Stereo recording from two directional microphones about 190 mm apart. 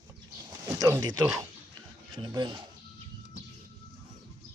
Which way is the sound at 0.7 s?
15° right (ahead or behind).